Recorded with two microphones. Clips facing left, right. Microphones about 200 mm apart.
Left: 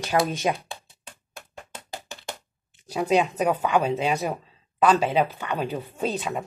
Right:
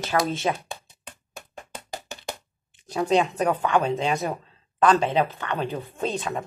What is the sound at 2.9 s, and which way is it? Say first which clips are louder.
Speech: even; 10° left (ahead or behind).